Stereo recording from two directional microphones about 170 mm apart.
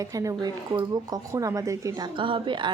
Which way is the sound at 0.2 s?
20° right (ahead or behind).